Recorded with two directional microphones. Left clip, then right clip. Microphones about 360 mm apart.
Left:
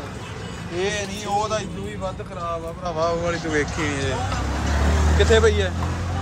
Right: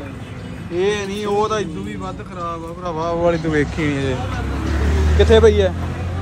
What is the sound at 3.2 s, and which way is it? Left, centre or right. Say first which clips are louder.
Speech: right 6 dB; centre.